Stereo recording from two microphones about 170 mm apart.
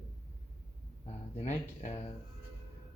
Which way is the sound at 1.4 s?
40° left (ahead or behind).